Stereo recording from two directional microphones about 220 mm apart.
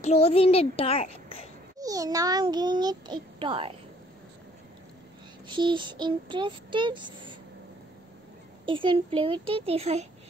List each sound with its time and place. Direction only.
0.0 s a child's voice: 30° left (ahead or behind)
1.8 s a child's voice: 15° right (ahead or behind)
5.5 s a child's voice: 20° right (ahead or behind)
8.6 s a child's voice: 20° right (ahead or behind)